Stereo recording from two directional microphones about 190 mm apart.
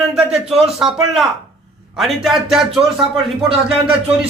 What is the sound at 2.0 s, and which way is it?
Speech, centre (ahead or behind).